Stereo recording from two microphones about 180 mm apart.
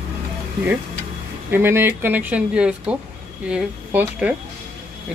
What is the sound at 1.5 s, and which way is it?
Speech, 15° right (ahead or behind).